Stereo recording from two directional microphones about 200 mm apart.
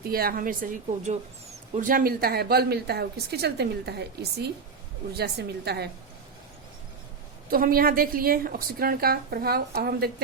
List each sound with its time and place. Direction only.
0.1 s a woman's voice: 45° right (ahead or behind)
7.5 s a woman's voice: 45° right (ahead or behind)